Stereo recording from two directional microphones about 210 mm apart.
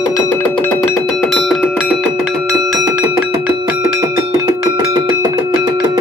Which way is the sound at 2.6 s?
15° right (ahead or behind).